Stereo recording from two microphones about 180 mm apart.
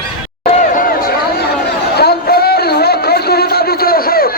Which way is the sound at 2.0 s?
60° left (ahead or behind).